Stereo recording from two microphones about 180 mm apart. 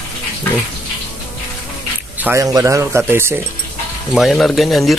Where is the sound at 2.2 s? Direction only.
15° right (ahead or behind).